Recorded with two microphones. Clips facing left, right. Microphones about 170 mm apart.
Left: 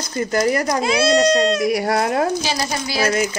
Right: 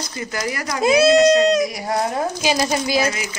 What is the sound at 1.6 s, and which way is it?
Speech, 65° left (ahead or behind).